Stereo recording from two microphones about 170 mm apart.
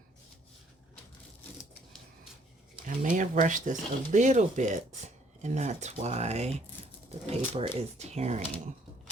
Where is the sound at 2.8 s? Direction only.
50° right (ahead or behind).